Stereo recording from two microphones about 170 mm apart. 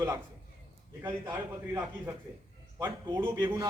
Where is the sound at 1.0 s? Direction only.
10° right (ahead or behind).